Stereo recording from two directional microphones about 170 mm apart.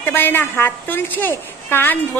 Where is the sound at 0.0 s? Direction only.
10° left (ahead or behind).